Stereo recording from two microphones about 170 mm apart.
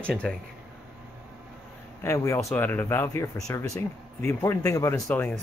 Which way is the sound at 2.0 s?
15° left (ahead or behind).